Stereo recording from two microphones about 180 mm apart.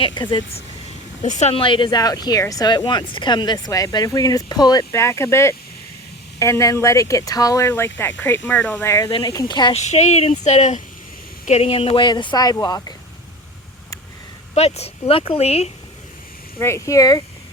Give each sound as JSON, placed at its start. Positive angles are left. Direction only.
{"t": 0.0, "sound": "speech", "side_deg": 25}
{"t": 1.2, "sound": "speech", "side_deg": 40}
{"t": 9.7, "sound": "speech", "side_deg": 40}
{"t": 14.5, "sound": "speech", "side_deg": 35}
{"t": 16.6, "sound": "speech", "side_deg": 15}